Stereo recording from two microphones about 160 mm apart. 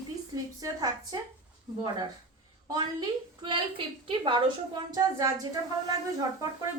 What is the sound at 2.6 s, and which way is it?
A woman's voice, 25° right (ahead or behind).